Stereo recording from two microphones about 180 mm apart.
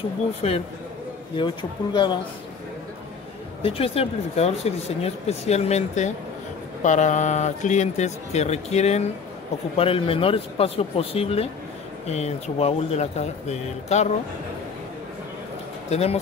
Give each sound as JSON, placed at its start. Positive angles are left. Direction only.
{"t": 0.4, "sound": "speech", "side_deg": 35}
{"t": 1.3, "sound": "speech", "side_deg": 25}
{"t": 3.6, "sound": "speech", "side_deg": 30}
{"t": 15.9, "sound": "speech", "side_deg": 35}